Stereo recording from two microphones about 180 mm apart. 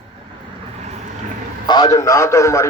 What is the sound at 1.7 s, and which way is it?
Speech, 20° left (ahead or behind).